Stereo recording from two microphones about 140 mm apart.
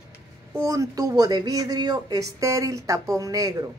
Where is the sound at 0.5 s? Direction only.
25° right (ahead or behind).